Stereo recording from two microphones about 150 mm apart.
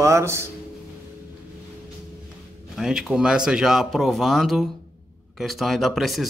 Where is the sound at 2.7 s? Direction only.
5° right (ahead or behind).